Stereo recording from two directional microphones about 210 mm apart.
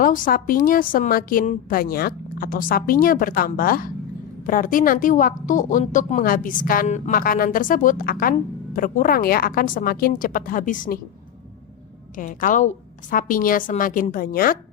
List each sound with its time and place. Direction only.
0.0 s a woman's voice: 40° left (ahead or behind)
12.1 s a woman's voice: 40° left (ahead or behind)